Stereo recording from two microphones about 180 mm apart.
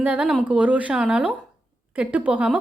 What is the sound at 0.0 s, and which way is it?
A woman's voice, 5° right (ahead or behind).